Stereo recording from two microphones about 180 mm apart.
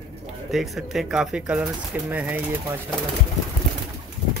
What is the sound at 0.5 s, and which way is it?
Speech, centre (ahead or behind).